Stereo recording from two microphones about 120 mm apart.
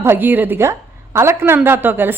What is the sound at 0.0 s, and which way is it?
Speech, 20° right (ahead or behind).